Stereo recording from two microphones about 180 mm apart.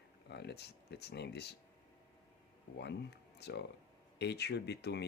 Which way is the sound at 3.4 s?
65° left (ahead or behind).